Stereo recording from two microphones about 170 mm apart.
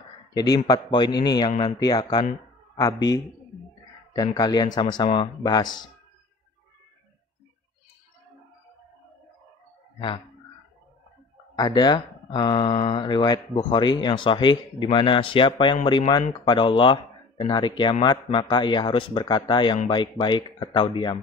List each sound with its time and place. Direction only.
0.7 s a man's voice: 25° left (ahead or behind)
9.9 s speech: 30° left (ahead or behind)
11.5 s speech: 25° left (ahead or behind)